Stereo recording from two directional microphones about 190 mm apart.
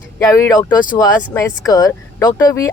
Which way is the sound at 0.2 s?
15° left (ahead or behind).